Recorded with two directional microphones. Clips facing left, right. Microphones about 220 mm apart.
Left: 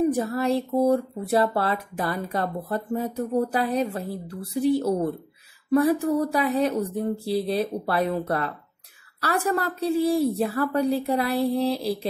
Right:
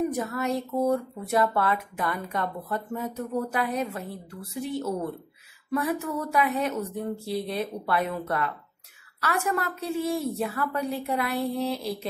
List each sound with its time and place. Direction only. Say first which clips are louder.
0.1 s speech: left 5 dB; 30° left (ahead or behind)